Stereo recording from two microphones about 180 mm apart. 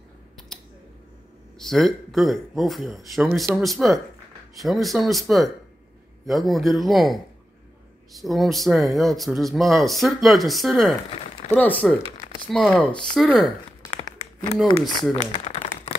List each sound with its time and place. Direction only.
1.6 s speech: centre (ahead or behind)
13.8 s crumpling: 20° left (ahead or behind)
15.4 s a sound: 40° left (ahead or behind)